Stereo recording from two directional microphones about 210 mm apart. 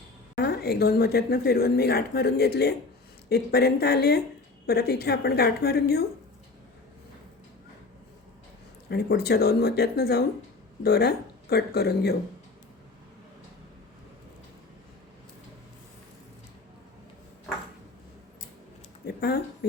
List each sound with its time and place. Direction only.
0.3 s speech: 50° left (ahead or behind)
8.9 s speech: 50° left (ahead or behind)
19.0 s a sound: 50° left (ahead or behind)